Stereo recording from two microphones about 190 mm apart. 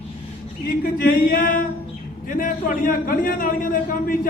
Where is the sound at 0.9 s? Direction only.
50° left (ahead or behind).